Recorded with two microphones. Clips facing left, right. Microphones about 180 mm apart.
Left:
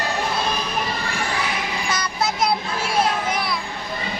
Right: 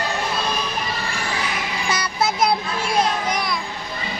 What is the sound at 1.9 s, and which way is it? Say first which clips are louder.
Vehicle: right 3 dB; 5° right (ahead or behind).